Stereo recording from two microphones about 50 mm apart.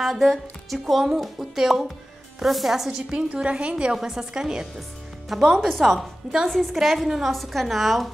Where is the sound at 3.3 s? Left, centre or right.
Right; by 6.4 s centre.